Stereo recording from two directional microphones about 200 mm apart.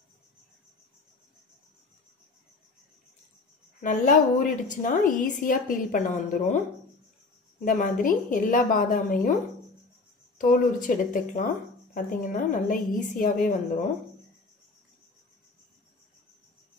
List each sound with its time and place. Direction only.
3.8 s speech: 40° left (ahead or behind)
7.6 s speech: 40° left (ahead or behind)
10.3 s speech: 40° left (ahead or behind)